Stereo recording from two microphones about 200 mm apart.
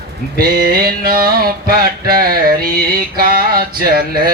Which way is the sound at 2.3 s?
45° right (ahead or behind).